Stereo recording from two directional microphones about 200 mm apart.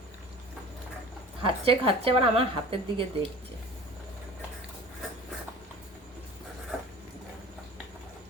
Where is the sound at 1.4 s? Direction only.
30° right (ahead or behind).